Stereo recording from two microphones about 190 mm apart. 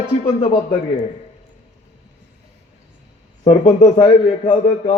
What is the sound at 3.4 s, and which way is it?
A man's voice, 40° left (ahead or behind).